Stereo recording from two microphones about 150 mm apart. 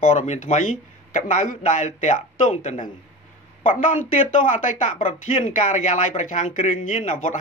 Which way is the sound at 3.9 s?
60° left (ahead or behind).